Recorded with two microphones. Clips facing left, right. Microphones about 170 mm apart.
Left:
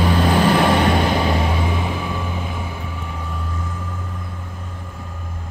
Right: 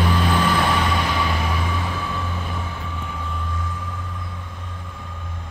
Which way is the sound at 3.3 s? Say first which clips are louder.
Left 1 dB; 40° left (ahead or behind).